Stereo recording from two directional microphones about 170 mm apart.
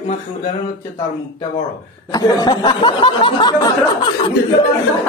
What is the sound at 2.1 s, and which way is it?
Speech, 20° left (ahead or behind).